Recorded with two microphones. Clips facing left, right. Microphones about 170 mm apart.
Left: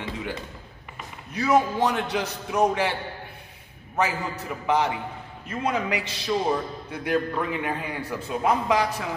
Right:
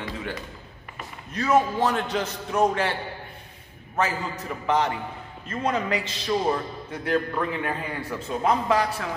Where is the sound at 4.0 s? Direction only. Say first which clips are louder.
Even; 15° left (ahead or behind).